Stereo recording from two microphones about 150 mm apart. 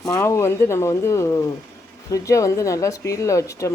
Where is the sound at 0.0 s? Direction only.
20° left (ahead or behind).